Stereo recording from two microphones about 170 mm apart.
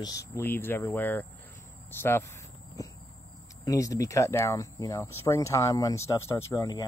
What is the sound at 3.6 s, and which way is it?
Speech, 20° left (ahead or behind).